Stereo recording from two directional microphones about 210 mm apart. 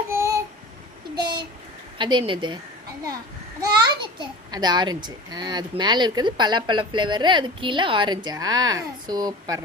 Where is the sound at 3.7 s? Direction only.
20° right (ahead or behind).